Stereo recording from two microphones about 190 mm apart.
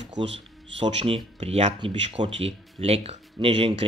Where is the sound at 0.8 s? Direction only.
30° right (ahead or behind).